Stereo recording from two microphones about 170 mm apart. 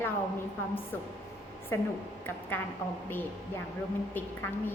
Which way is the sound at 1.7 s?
15° left (ahead or behind).